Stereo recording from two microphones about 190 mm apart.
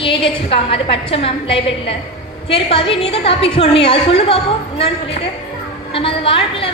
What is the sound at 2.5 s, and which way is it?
A woman's voice, 30° left (ahead or behind).